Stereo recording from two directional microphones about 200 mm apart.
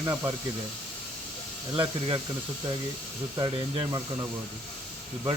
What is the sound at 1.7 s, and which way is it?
Speech, 25° right (ahead or behind).